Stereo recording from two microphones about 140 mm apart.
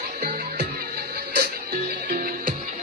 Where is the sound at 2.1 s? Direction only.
90° right.